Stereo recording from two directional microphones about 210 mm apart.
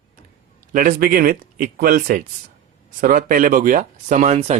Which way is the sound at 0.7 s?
40° right (ahead or behind).